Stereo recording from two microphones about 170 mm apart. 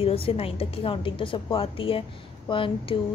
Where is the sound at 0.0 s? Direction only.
35° left (ahead or behind).